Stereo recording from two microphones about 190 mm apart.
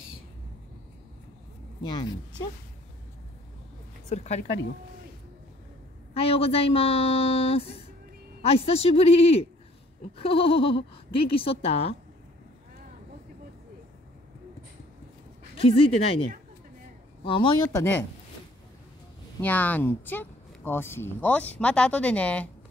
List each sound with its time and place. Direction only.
1.8 s a woman's voice: 25° left (ahead or behind)
4.1 s speech: 35° left (ahead or behind)
6.1 s a woman's voice: 30° left (ahead or behind)
15.5 s a woman's voice: 30° left (ahead or behind)
19.4 s speech: 10° left (ahead or behind)